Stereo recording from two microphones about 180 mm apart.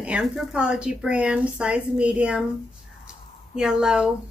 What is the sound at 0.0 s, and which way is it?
Speech, 5° right (ahead or behind).